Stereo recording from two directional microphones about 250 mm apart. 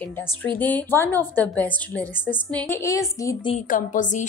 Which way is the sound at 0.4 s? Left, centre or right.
Centre.